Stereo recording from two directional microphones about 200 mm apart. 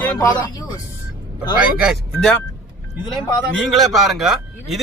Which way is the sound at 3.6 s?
Centre (ahead or behind).